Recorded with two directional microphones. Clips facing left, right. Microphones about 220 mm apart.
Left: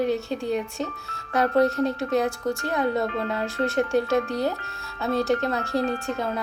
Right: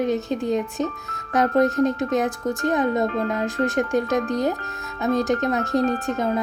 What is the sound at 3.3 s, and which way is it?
A woman's voice, 15° right (ahead or behind).